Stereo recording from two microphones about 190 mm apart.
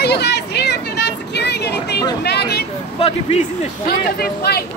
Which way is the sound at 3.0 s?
35° left (ahead or behind).